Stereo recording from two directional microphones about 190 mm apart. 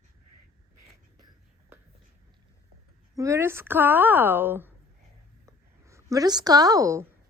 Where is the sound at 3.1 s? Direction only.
15° right (ahead or behind).